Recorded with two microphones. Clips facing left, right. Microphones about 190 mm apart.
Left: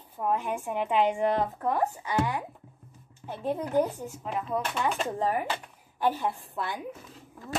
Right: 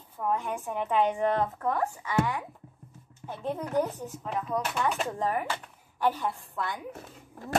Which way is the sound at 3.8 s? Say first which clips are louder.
Left 2 dB; 5° left (ahead or behind).